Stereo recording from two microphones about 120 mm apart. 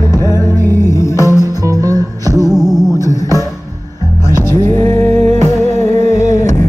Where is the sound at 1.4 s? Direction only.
30° right (ahead or behind).